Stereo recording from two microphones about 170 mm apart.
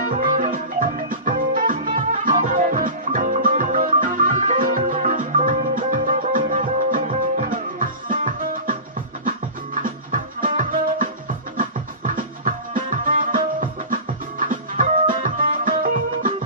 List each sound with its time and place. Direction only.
0.1 s music: 50° right (ahead or behind)
9.8 s music: 55° right (ahead or behind)